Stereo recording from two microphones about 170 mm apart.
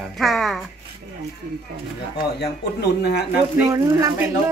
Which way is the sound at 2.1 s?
75° left (ahead or behind).